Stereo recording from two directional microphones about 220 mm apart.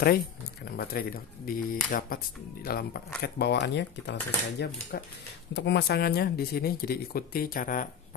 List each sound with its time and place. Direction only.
0.7 s speech: 40° left (ahead or behind)